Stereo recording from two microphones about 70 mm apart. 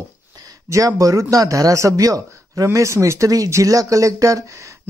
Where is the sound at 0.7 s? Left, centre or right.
Right.